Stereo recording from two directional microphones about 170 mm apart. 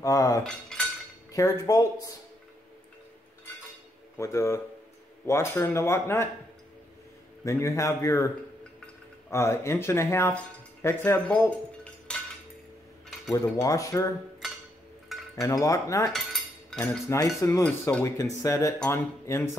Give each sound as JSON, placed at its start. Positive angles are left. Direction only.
{"t": 0.0, "sound": "speech", "side_deg": 20}
{"t": 0.4, "sound": "cutlery", "side_deg": 5}
{"t": 1.3, "sound": "speech", "side_deg": 20}
{"t": 4.2, "sound": "speech", "side_deg": 15}
{"t": 7.4, "sound": "speech", "side_deg": 15}
{"t": 9.3, "sound": "speech", "side_deg": 15}
{"t": 10.8, "sound": "cutlery", "side_deg": 15}
{"t": 13.3, "sound": "speech", "side_deg": 20}
{"t": 15.1, "sound": "a sound", "side_deg": 0}
{"t": 15.4, "sound": "speech", "side_deg": 20}
{"t": 16.7, "sound": "cutlery", "side_deg": 5}
{"t": 17.1, "sound": "speech", "side_deg": 15}